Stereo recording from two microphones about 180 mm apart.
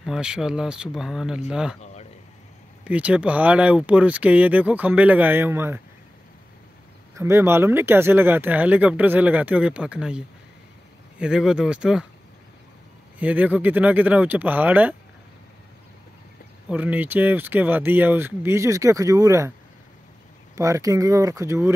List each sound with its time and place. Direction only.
0.0 s speech: 5° right (ahead or behind)
2.8 s speech: 5° right (ahead or behind)
7.2 s speech: 15° right (ahead or behind)
13.2 s speech: 10° right (ahead or behind)
16.6 s speech: 10° right (ahead or behind)
20.5 s speech: 15° right (ahead or behind)